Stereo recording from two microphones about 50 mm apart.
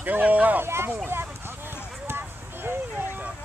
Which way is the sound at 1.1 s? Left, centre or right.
Right.